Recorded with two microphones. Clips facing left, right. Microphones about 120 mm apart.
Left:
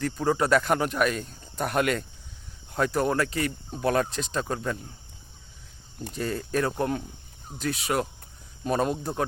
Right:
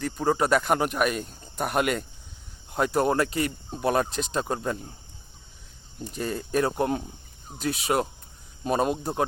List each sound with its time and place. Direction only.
0.0 s speech: 10° right (ahead or behind); by 4.9 s 25° right (ahead or behind)
6.1 s speech: 15° right (ahead or behind)